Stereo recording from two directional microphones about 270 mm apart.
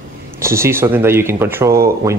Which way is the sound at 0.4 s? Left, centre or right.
Centre.